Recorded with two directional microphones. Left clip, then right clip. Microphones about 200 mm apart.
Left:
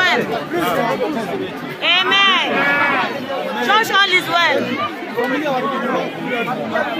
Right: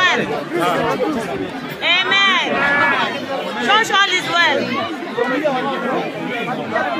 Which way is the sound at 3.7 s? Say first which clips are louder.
Even; 10° left (ahead or behind).